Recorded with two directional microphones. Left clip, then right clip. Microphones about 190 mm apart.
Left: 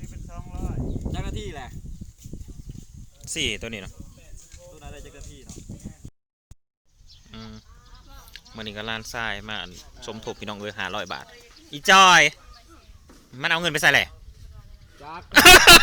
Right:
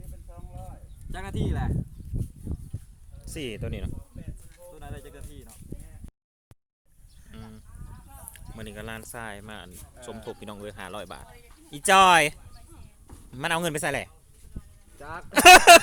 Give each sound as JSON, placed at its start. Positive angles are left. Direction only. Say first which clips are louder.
{"t": 1.1, "sound": "a sound", "louder": "even", "side_deg": 10}
{"t": 3.2, "sound": "speech", "louder": "left 8 dB", "side_deg": 0}
{"t": 7.3, "sound": "sheep", "louder": "left 5 dB", "side_deg": 15}
{"t": 8.5, "sound": "speech", "louder": "left 8 dB", "side_deg": 15}
{"t": 11.7, "sound": "a man's voice", "louder": "left 4 dB", "side_deg": -10}
{"t": 13.7, "sound": "speech", "louder": "left 11 dB", "side_deg": 0}
{"t": 15.4, "sound": "speech", "louder": "left 2 dB", "side_deg": -5}